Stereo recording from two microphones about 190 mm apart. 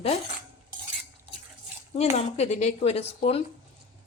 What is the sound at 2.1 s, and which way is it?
A woman's voice, 35° left (ahead or behind).